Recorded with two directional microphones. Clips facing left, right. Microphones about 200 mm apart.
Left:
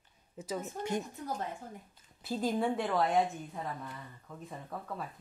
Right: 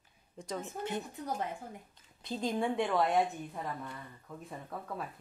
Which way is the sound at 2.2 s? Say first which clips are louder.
Left 2 dB; 5° left (ahead or behind).